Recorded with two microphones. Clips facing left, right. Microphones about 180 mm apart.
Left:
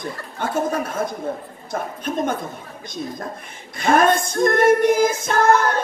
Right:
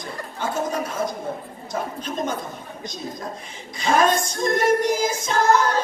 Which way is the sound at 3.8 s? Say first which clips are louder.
Left 3 dB; 55° left (ahead or behind).